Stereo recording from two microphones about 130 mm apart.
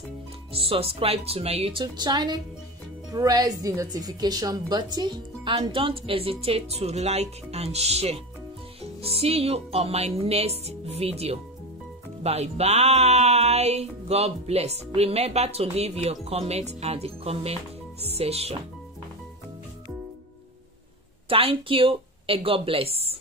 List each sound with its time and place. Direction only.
0.5 s speech: 45° right (ahead or behind)
21.3 s a woman's voice: 45° right (ahead or behind)